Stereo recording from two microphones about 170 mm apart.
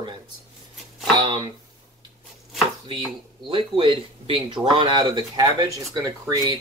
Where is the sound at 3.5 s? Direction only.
30° right (ahead or behind).